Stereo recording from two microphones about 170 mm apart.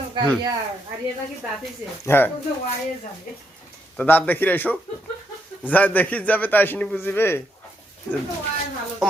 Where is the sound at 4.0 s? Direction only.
10° left (ahead or behind).